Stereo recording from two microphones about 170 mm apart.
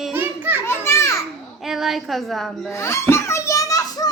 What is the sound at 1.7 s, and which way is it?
Speech, centre (ahead or behind).